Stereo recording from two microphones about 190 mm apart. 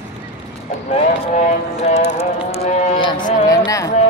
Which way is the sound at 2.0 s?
35° left (ahead or behind).